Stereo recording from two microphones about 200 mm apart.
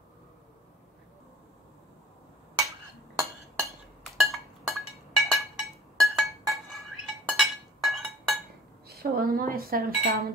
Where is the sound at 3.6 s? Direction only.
Centre (ahead or behind).